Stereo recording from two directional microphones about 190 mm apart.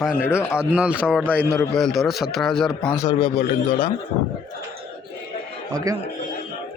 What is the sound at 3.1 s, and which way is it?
Speech, 30° left (ahead or behind).